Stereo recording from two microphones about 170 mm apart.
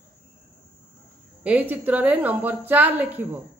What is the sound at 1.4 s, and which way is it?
Speech, 10° right (ahead or behind).